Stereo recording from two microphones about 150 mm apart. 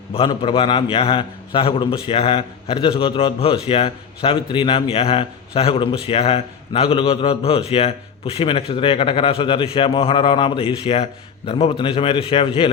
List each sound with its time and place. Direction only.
0.1 s a man's voice: 35° left (ahead or behind)